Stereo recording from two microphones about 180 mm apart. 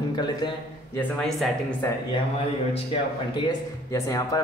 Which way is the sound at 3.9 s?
20° left (ahead or behind).